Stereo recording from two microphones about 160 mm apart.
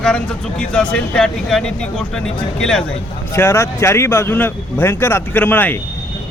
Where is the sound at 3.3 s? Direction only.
15° left (ahead or behind).